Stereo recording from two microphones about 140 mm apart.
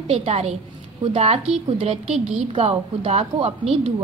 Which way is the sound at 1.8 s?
45° right (ahead or behind).